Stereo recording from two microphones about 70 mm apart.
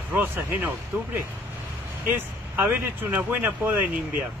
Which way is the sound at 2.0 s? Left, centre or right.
Right.